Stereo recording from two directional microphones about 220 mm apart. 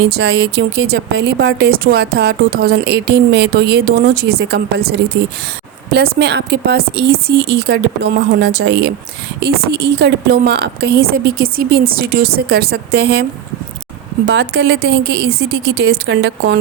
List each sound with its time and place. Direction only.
0.0 s a woman's voice: 50° right (ahead or behind)
14.3 s a woman's voice: 50° right (ahead or behind)